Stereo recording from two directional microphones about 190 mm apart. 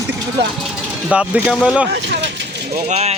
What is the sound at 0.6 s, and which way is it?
Speech, 5° right (ahead or behind).